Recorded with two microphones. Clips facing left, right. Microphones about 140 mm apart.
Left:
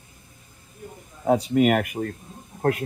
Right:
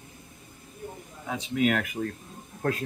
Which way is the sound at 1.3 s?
55° left (ahead or behind).